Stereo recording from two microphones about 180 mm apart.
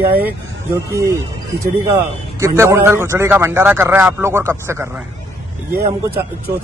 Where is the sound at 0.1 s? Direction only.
10° right (ahead or behind).